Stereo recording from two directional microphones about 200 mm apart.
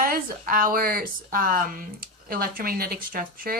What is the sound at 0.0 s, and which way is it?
Speech, 45° right (ahead or behind).